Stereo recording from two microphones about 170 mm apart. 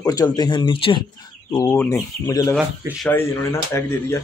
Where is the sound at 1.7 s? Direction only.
15° left (ahead or behind).